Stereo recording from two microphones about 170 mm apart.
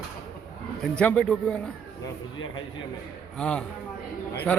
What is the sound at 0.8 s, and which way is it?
Speech, 5° left (ahead or behind).